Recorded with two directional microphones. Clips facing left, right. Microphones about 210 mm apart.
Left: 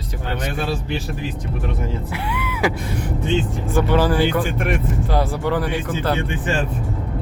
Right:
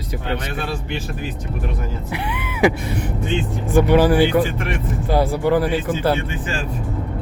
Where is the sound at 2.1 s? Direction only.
20° right (ahead or behind).